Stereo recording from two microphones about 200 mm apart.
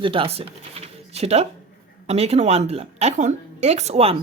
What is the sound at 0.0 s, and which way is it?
Speech, 25° right (ahead or behind).